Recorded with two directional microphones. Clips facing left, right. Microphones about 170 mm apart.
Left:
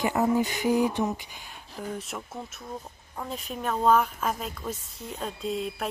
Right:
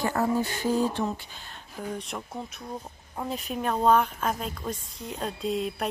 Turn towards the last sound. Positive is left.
turn(degrees=0)  # may be behind; listen again after turning